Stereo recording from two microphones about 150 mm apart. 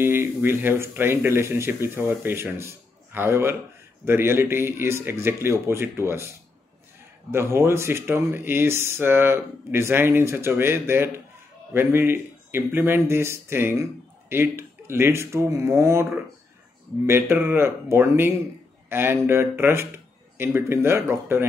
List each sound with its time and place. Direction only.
0.0 s speech: 15° right (ahead or behind)